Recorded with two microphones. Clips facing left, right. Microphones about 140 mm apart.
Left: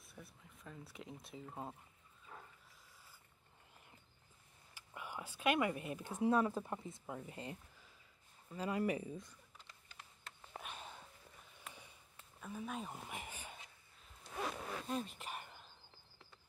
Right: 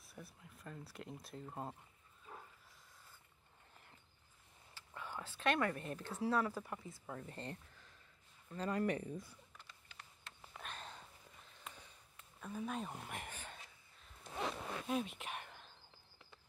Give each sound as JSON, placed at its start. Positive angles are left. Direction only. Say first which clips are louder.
{"t": 0.0, "sound": "speech", "louder": "right 2 dB", "side_deg": 0}
{"t": 4.7, "sound": "speech", "louder": "even", "side_deg": 15}
{"t": 9.8, "sound": "a sound", "louder": "left 1 dB", "side_deg": 40}
{"t": 10.6, "sound": "a sound", "louder": "right 3 dB", "side_deg": 10}
{"t": 12.4, "sound": "speech", "louder": "right 2 dB", "side_deg": 0}
{"t": 14.9, "sound": "whispering", "louder": "right 4 dB", "side_deg": -5}